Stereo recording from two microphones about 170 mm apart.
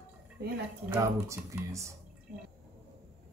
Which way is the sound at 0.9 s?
20° right (ahead or behind).